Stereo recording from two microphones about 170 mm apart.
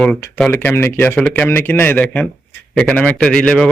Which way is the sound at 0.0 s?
5° left (ahead or behind).